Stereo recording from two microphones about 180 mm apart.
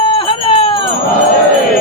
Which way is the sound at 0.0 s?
30° left (ahead or behind).